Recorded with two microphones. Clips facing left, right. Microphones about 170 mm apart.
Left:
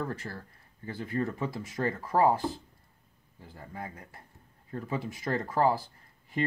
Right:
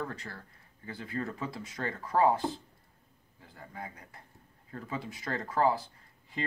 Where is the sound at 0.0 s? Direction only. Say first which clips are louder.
Left 3 dB; 35° left (ahead or behind).